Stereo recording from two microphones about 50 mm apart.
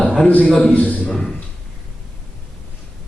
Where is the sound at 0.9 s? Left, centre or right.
Centre.